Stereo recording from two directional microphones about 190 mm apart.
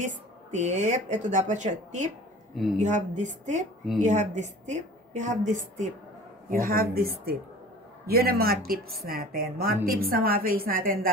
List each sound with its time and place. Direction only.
0.0 s a woman's voice: 40° right (ahead or behind)